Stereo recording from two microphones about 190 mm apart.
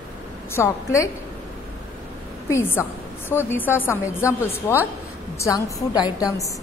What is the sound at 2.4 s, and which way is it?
A woman's voice, 15° left (ahead or behind).